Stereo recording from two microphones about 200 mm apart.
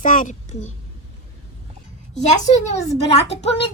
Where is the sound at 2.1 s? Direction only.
35° left (ahead or behind).